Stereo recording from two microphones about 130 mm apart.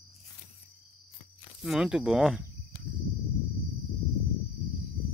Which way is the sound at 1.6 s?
5° right (ahead or behind).